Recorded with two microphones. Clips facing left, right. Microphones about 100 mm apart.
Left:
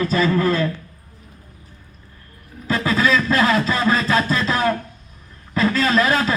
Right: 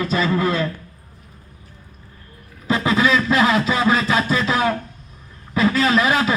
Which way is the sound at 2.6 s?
20° right (ahead or behind).